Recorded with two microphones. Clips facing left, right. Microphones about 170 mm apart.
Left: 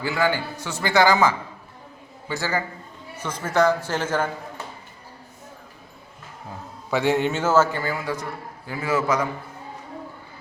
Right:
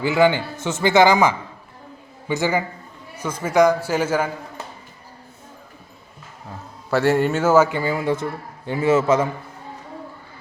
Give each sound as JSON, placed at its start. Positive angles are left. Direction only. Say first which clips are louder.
{"t": 0.0, "sound": "a man's voice", "louder": "right 6 dB", "side_deg": -20}
{"t": 7.0, "sound": "a man's voice", "louder": "right 4 dB", "side_deg": -5}